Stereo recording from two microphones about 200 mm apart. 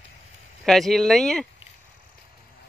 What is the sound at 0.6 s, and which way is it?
Speech, centre (ahead or behind).